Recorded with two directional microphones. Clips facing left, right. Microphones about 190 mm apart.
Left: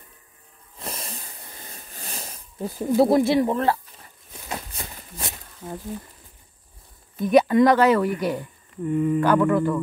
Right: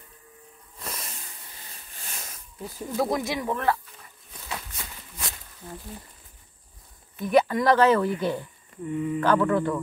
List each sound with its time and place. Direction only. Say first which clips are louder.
0.7 s hiss: left 3 dB; 30° left (ahead or behind)
1.6 s a sound: left 8 dB; 40° left (ahead or behind)
7.2 s speech: left 4 dB; 20° left (ahead or behind)
8.9 s speech: left 6 dB; 50° left (ahead or behind)
9.2 s speech: left 1 dB; 15° left (ahead or behind)